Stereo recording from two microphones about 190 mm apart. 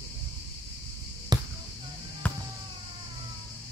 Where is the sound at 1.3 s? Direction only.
20° right (ahead or behind).